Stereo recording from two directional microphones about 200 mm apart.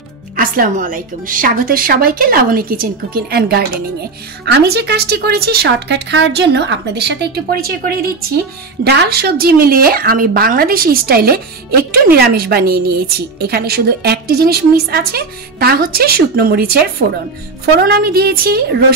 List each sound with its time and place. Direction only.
0.4 s a woman's voice: 45° right (ahead or behind)
17.7 s a woman's voice: 50° right (ahead or behind)